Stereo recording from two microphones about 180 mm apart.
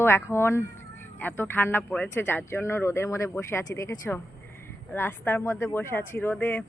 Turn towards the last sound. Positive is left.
turn(degrees=10)  # may be behind; listen again after turning